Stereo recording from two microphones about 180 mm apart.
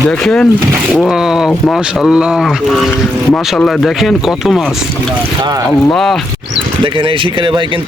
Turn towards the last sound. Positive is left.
turn(degrees=-30)  # may be behind; listen again after turning